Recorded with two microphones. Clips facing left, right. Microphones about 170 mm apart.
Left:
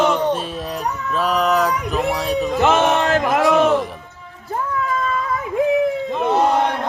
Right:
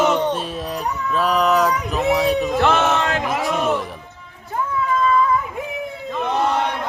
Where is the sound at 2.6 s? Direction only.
25° left (ahead or behind); by 3.2 s 40° left (ahead or behind).